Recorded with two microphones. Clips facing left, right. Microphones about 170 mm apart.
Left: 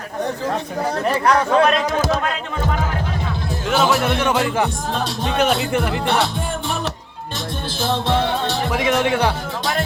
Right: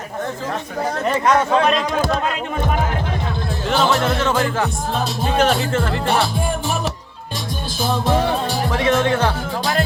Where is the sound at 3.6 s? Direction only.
10° left (ahead or behind).